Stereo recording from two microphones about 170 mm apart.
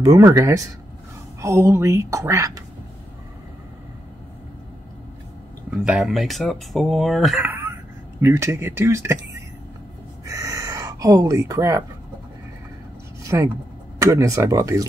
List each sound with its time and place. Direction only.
0.0 s a woman's voice: 20° right (ahead or behind)
5.7 s a woman's voice: 5° right (ahead or behind)
10.2 s a sound: 20° right (ahead or behind)
13.2 s vehicle: 20° right (ahead or behind)
13.9 s speech: 20° right (ahead or behind)